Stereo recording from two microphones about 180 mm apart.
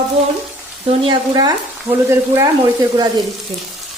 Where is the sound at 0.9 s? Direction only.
30° right (ahead or behind).